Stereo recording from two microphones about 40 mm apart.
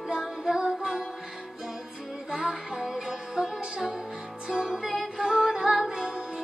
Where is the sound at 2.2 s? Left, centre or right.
Centre.